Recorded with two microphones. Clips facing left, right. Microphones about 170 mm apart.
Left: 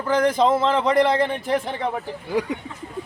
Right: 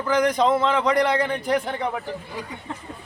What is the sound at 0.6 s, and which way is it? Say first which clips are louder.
Speech: left 2 dB; 30° left (ahead or behind).